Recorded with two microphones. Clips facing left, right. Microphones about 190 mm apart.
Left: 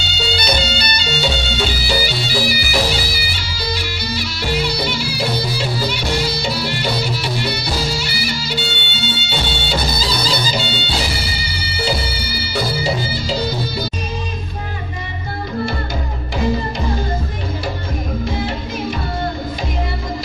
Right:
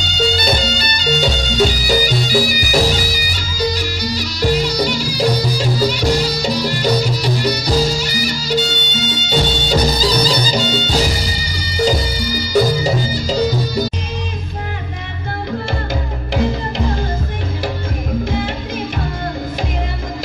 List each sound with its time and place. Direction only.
0.0 s music: 45° right (ahead or behind)
1.6 s bagpipes: 45° right (ahead or behind)